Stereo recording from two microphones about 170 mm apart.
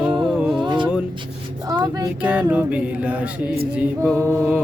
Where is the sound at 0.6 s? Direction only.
25° right (ahead or behind).